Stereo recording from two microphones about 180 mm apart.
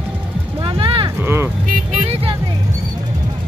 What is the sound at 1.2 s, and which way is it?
Vehicle, 15° right (ahead or behind).